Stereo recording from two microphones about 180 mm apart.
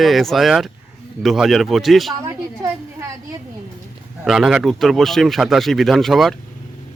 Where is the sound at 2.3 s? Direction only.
15° right (ahead or behind).